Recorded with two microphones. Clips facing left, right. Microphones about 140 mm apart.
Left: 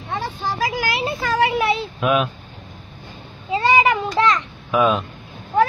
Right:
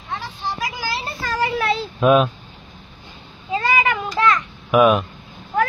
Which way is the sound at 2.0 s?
30° right (ahead or behind).